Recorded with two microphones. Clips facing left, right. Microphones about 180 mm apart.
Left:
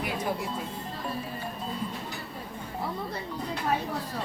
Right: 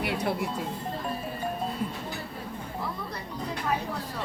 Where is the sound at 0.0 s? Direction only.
70° right (ahead or behind).